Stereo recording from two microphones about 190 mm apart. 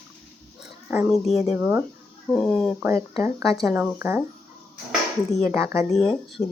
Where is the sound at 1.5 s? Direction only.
10° right (ahead or behind).